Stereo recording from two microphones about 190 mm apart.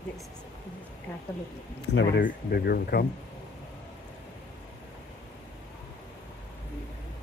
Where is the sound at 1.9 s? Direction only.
60° left (ahead or behind).